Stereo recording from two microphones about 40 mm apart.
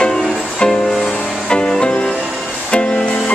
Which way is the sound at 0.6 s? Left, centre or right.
Centre.